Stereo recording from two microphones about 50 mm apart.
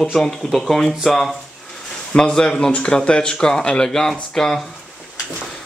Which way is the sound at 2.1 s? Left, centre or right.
Centre.